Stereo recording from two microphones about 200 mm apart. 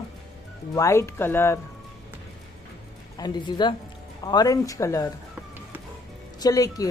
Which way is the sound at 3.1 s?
20° left (ahead or behind).